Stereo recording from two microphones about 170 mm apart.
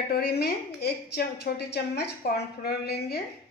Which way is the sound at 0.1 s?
70° left (ahead or behind).